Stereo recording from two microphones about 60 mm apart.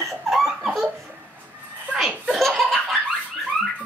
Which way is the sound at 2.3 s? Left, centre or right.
Centre.